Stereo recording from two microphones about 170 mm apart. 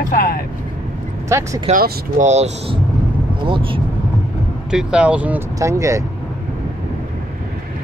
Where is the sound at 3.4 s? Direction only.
30° right (ahead or behind).